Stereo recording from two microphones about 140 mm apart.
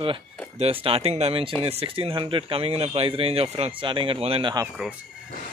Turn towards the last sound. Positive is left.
turn(degrees=-5)  # may be behind; listen again after turning